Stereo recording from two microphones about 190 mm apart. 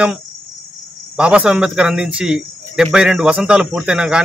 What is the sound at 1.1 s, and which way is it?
Speech, 5° right (ahead or behind).